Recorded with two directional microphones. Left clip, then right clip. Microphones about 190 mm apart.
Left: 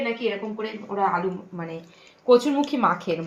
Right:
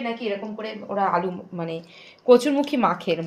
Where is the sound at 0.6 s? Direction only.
50° right (ahead or behind).